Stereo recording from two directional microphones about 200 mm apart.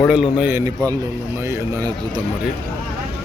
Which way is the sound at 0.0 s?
5° right (ahead or behind).